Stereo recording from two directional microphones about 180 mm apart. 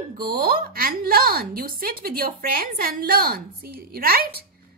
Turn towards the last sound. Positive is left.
turn(degrees=-60)  # may be behind; listen again after turning